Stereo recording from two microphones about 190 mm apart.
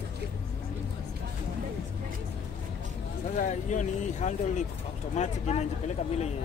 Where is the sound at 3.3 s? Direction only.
40° left (ahead or behind).